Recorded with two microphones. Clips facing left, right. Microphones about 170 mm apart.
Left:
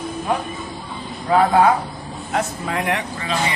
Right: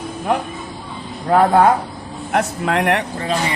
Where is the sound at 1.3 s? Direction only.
50° right (ahead or behind).